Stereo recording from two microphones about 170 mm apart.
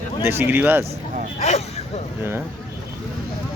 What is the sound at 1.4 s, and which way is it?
Speech, 40° left (ahead or behind).